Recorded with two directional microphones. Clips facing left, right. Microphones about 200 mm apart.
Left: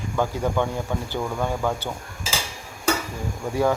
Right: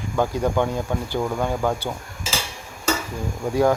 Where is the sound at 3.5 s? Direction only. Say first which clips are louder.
Right 3 dB; 15° right (ahead or behind).